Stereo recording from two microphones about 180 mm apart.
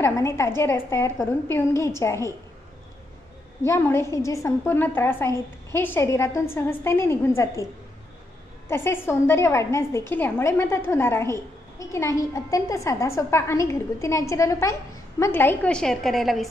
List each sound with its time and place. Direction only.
0.0 s a woman's voice: 15° left (ahead or behind)
3.6 s a woman's voice: 15° left (ahead or behind)
8.6 s a woman's voice: 15° left (ahead or behind)